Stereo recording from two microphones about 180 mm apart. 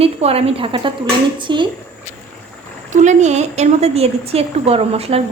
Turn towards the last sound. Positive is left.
turn(degrees=-35)  # may be behind; listen again after turning